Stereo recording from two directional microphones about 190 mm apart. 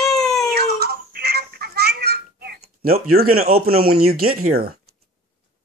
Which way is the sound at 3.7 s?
55° right (ahead or behind).